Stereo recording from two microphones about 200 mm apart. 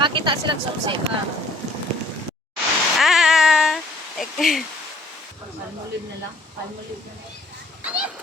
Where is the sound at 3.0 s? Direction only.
Centre (ahead or behind).